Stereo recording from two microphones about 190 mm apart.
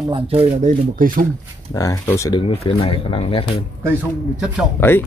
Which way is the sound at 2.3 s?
25° left (ahead or behind).